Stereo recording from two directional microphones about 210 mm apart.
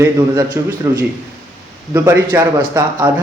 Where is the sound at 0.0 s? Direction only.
10° right (ahead or behind).